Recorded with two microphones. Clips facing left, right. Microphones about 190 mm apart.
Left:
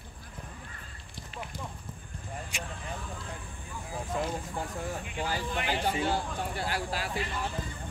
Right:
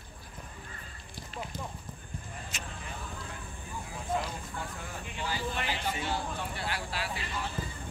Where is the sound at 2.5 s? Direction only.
15° left (ahead or behind).